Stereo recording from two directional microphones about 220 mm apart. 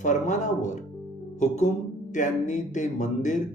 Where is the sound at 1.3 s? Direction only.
30° left (ahead or behind).